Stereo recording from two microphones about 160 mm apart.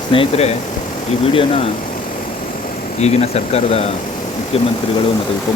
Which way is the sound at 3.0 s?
40° left (ahead or behind).